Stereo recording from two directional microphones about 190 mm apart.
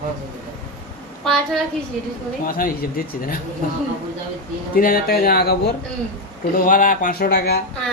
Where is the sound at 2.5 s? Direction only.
50° left (ahead or behind).